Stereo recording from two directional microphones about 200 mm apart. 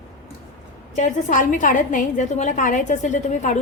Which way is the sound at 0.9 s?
40° left (ahead or behind).